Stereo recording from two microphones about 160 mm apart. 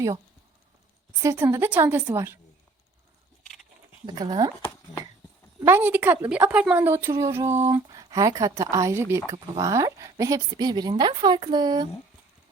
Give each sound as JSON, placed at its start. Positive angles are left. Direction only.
{"t": 1.2, "sound": "a woman's voice", "side_deg": -20}
{"t": 4.0, "sound": "a woman's voice", "side_deg": -25}
{"t": 5.6, "sound": "a woman's voice", "side_deg": -10}